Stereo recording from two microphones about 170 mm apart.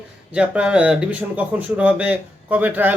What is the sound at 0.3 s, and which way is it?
Speech, 5° right (ahead or behind).